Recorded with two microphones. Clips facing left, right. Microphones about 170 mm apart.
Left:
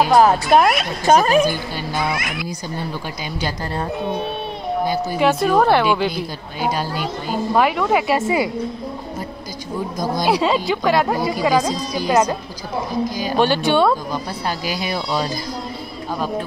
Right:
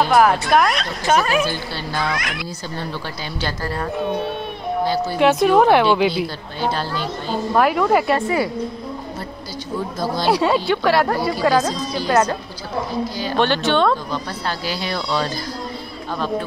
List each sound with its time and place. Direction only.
0.1 s speech: 25° left (ahead or behind)
1.0 s speech: 40° left (ahead or behind)
1.5 s speech: 10° left (ahead or behind)
4.8 s speech: 15° left (ahead or behind); by 6.2 s 5° right (ahead or behind)
6.6 s speech: 10° left (ahead or behind)
9.9 s speech: 15° left (ahead or behind)